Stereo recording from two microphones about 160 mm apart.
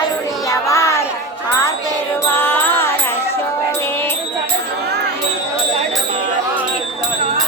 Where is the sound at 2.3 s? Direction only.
15° left (ahead or behind).